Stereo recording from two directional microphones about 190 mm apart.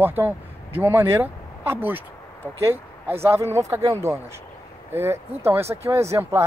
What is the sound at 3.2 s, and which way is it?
Speech, 15° right (ahead or behind).